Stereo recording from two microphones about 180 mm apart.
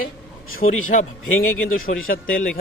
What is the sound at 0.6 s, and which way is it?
Speech, 45° left (ahead or behind).